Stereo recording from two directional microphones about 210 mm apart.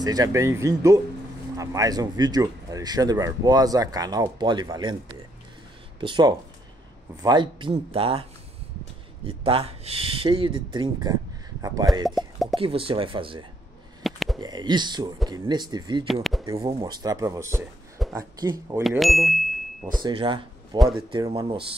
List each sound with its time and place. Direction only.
0.0 s speech: 15° right (ahead or behind)
5.9 s speech: 25° right (ahead or behind)
12.2 s plop: centre (ahead or behind)
12.5 s speech: 25° right (ahead or behind)
14.0 s a sound: centre (ahead or behind)
14.4 s speech: 20° right (ahead or behind)
16.1 s speech: centre (ahead or behind)
16.4 s speech: 20° right (ahead or behind)
18.8 s speech: centre (ahead or behind)
20.0 s speech: 20° right (ahead or behind)